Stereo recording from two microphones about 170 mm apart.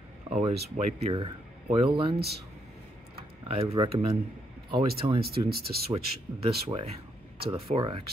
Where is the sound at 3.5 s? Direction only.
35° right (ahead or behind).